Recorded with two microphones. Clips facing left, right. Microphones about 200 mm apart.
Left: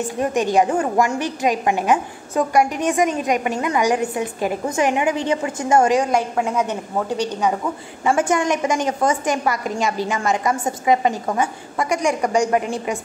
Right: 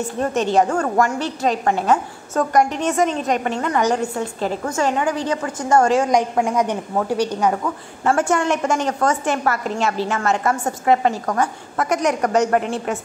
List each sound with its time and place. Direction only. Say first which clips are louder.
0.2 s a woman's voice: even; 15° left (ahead or behind)
5.9 s a woman's voice: right 2 dB; centre (ahead or behind)
7.1 s a woman's voice: right 2 dB; 10° right (ahead or behind)
8.0 s a woman's voice: even; 10° left (ahead or behind)